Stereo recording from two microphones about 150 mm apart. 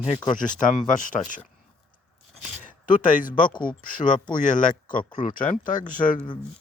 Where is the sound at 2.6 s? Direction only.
60° left (ahead or behind).